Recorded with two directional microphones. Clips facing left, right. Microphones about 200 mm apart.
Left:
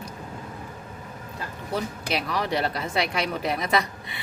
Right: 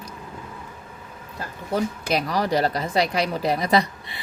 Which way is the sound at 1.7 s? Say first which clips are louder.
Right 5 dB; 45° right (ahead or behind).